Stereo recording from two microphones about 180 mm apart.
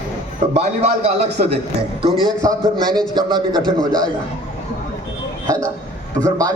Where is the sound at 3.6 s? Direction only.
5° left (ahead or behind).